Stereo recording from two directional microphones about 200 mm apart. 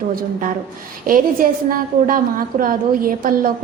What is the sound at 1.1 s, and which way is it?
A woman's voice, 45° right (ahead or behind).